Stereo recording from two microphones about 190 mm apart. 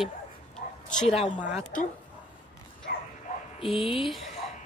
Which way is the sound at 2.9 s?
55° left (ahead or behind).